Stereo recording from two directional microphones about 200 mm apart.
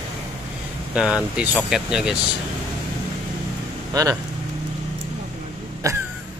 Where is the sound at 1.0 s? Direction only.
5° right (ahead or behind).